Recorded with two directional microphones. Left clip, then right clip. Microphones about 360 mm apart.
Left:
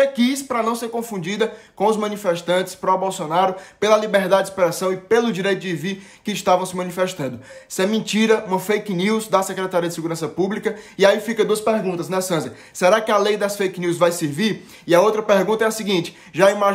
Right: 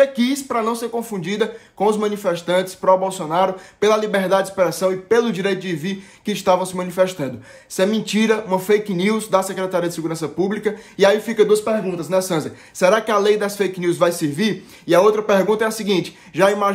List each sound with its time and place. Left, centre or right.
0.0 s speech: centre